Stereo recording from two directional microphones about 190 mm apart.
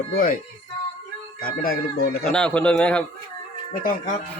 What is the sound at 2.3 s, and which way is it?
Speech, 5° left (ahead or behind).